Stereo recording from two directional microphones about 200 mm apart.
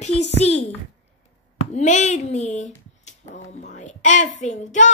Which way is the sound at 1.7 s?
35° left (ahead or behind).